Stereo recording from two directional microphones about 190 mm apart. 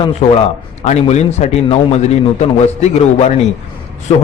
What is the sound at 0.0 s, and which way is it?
A man's voice, 35° left (ahead or behind).